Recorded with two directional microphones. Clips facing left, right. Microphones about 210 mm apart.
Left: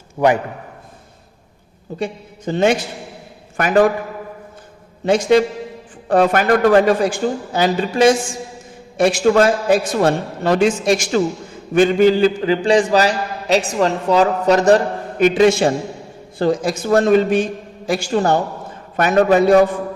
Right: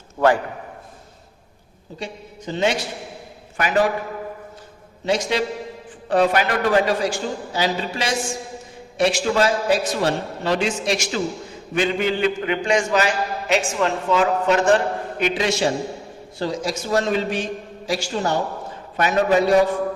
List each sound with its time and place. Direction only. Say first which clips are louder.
0.2 s a man's voice: left 2 dB; 20° left (ahead or behind)
2.0 s a man's voice: left 8 dB; 55° left (ahead or behind)
5.0 s a man's voice: left 8 dB; 50° left (ahead or behind)
15.2 s a man's voice: left 9 dB; 50° left (ahead or behind)